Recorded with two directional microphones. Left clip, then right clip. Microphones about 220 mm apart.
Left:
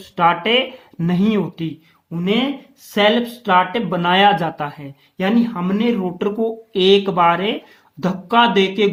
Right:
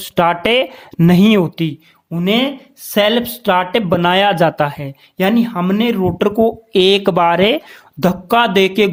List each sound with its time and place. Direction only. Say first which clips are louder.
0.2 s speech: right 2 dB; 50° right (ahead or behind)